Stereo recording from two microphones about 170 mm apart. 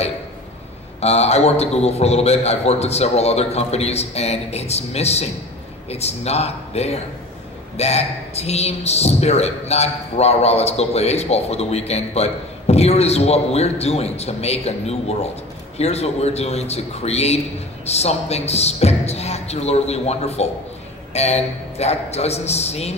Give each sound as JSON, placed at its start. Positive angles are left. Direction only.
{"t": 1.0, "sound": "a woman's voice", "side_deg": 40}